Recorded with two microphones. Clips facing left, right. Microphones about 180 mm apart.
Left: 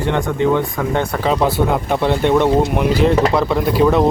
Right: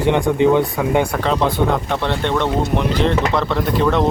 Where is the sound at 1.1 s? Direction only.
5° left (ahead or behind).